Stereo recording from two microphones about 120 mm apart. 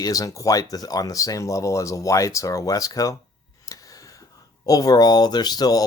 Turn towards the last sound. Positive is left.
turn(degrees=35)  # may be behind; listen again after turning